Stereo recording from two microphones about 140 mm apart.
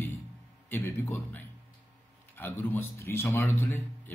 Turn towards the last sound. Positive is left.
turn(degrees=15)  # may be behind; listen again after turning